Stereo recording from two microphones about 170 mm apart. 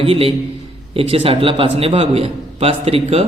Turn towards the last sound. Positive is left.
turn(degrees=-35)  # may be behind; listen again after turning